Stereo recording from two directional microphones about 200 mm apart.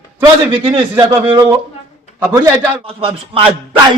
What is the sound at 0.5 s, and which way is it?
Speech, 25° right (ahead or behind).